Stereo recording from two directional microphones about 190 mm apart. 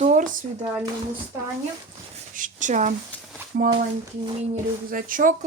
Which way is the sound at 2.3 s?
40° right (ahead or behind).